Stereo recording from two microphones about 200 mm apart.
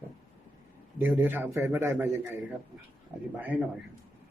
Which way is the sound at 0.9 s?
10° right (ahead or behind).